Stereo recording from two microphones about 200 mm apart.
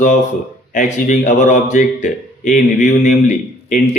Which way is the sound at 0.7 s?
40° left (ahead or behind).